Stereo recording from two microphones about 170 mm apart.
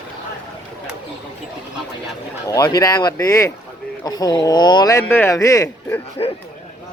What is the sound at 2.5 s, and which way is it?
Speech, 20° left (ahead or behind).